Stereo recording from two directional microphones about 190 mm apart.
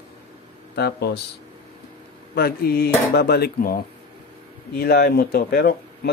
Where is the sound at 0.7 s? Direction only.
60° left (ahead or behind).